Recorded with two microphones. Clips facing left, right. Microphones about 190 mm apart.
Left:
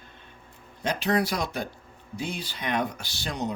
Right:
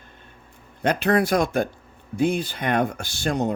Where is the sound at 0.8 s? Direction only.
55° right (ahead or behind).